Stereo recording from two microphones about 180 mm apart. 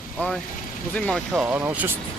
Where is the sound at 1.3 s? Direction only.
5° right (ahead or behind).